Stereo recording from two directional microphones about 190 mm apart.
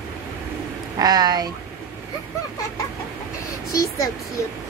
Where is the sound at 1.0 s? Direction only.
20° right (ahead or behind).